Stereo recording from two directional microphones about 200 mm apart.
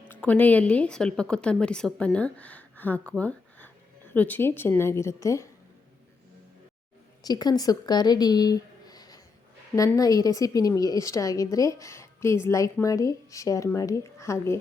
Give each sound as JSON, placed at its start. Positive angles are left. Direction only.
{"t": 0.1, "sound": "a woman's voice", "side_deg": 5}
{"t": 7.2, "sound": "a woman's voice", "side_deg": 20}